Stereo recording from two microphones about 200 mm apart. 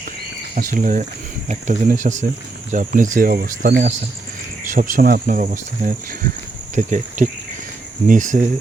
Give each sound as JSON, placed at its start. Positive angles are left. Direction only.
{"t": 0.5, "sound": "speech", "side_deg": -40}